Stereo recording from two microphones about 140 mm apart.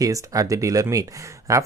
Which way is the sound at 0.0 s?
25° right (ahead or behind).